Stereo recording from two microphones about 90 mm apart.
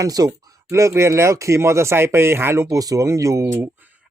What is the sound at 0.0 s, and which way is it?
Speech, 45° right (ahead or behind).